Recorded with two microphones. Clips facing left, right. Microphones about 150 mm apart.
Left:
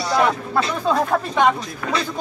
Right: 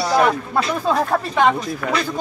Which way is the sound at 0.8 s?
5° right (ahead or behind).